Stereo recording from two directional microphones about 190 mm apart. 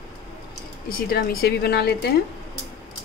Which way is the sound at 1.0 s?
50° left (ahead or behind).